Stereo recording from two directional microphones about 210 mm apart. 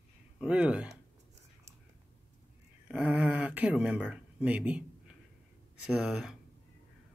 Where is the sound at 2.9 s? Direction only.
5° right (ahead or behind).